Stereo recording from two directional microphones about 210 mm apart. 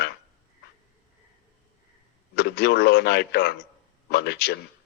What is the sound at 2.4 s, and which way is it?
Speech, 50° left (ahead or behind).